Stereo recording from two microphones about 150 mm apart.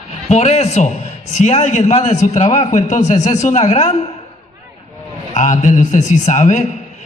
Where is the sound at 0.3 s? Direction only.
50° left (ahead or behind).